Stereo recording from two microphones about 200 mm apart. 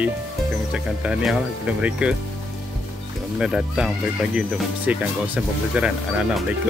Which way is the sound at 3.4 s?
5° right (ahead or behind).